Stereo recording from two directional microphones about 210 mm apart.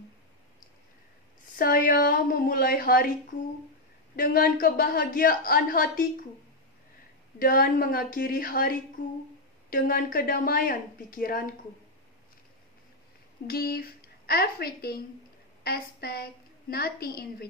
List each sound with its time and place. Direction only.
1.6 s a woman's voice: 45° left (ahead or behind)
4.2 s a woman's voice: 45° left (ahead or behind)
7.3 s a woman's voice: 45° left (ahead or behind)
13.5 s a woman's voice: 50° left (ahead or behind)